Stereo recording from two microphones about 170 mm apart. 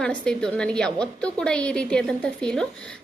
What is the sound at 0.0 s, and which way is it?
A woman's voice, 5° left (ahead or behind).